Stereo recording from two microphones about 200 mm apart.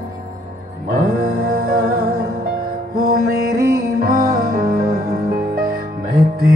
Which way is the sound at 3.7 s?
45° right (ahead or behind).